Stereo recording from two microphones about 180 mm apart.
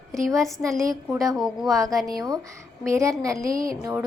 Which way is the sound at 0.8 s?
15° right (ahead or behind).